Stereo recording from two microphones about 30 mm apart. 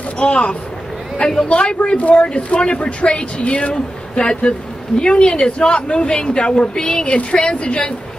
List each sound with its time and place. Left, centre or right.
0.2 s speech: left
2.0 s a woman's voice: left